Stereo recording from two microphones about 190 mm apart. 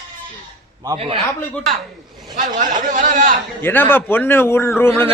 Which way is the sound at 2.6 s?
40° right (ahead or behind).